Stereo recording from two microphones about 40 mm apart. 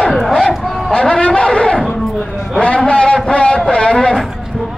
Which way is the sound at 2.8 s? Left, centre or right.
Left.